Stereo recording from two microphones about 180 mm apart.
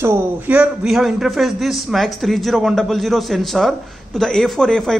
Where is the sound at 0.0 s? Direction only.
10° right (ahead or behind).